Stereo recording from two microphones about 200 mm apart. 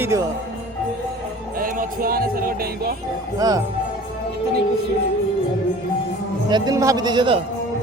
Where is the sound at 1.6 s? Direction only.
45° right (ahead or behind).